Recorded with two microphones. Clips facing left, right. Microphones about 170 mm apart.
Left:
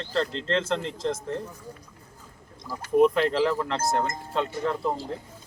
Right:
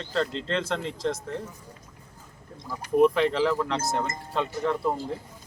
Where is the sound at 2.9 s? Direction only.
Centre (ahead or behind).